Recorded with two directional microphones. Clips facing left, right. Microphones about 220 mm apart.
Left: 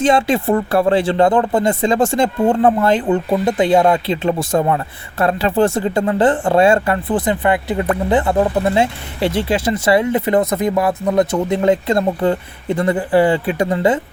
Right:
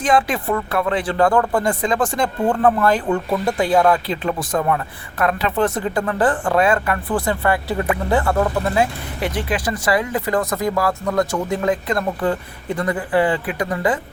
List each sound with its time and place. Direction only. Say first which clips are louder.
0.0 s speech: left 4 dB; 25° left (ahead or behind)